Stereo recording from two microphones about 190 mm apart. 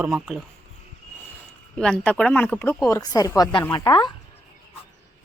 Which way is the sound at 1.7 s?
5° left (ahead or behind).